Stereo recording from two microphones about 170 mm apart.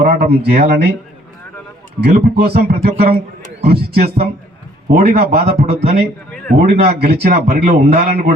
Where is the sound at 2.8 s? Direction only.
35° right (ahead or behind).